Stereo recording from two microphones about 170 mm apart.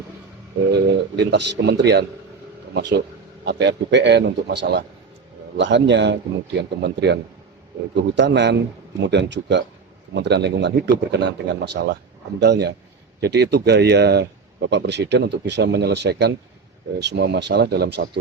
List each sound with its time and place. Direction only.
0.7 s speech: 90° right
3.4 s a man's voice: 85° right